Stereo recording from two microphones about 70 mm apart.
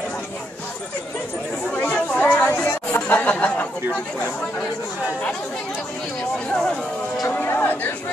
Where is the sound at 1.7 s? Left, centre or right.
Centre.